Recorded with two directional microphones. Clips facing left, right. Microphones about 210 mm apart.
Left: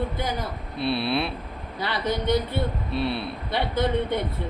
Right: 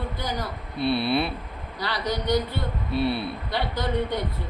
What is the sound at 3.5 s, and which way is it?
Speech, 25° left (ahead or behind).